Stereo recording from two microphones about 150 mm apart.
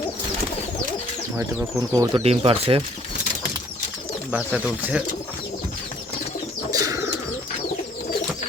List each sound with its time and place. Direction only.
1.9 s speech: 25° right (ahead or behind)
2.2 s speech: 40° right (ahead or behind)
4.3 s speech: 5° right (ahead or behind)
6.7 s pigeon: 20° right (ahead or behind)